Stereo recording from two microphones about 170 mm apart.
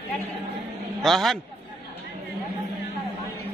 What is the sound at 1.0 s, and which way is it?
Speech, centre (ahead or behind).